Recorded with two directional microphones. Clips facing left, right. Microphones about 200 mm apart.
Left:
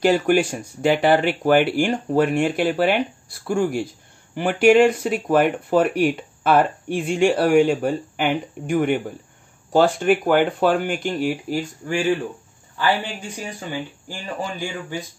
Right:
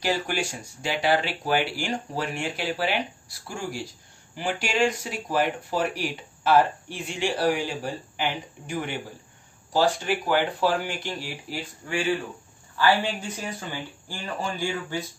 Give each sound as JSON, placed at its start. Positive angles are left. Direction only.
{"t": 0.0, "sound": "speech", "side_deg": 55}
{"t": 13.7, "sound": "speech", "side_deg": 15}